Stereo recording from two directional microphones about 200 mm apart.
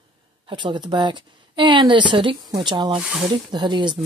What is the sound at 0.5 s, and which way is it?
Speech, 25° right (ahead or behind).